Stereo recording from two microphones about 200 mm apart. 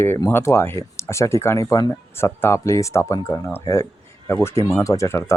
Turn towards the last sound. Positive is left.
turn(degrees=15)  # may be behind; listen again after turning